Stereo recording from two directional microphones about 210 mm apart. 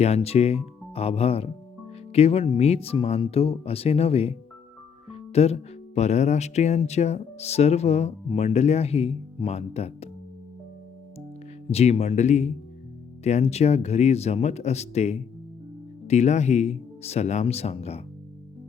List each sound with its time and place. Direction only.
0.0 s speech: 30° left (ahead or behind)
11.7 s speech: 30° left (ahead or behind)